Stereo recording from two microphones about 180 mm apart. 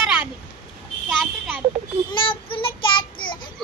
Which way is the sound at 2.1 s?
30° left (ahead or behind).